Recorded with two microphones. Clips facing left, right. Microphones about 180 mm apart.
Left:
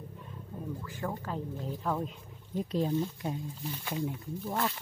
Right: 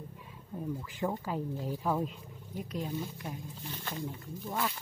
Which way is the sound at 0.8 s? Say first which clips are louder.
Right 2 dB; 15° right (ahead or behind).